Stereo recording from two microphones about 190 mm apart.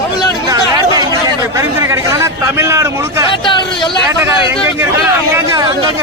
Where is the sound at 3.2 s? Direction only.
25° left (ahead or behind).